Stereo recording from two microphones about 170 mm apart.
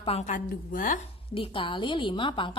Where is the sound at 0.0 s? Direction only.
40° left (ahead or behind).